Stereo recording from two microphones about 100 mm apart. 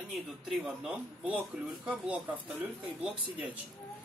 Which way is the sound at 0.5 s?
5° right (ahead or behind).